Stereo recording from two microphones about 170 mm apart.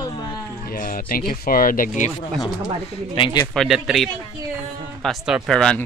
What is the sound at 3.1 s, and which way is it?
Speech, 30° left (ahead or behind).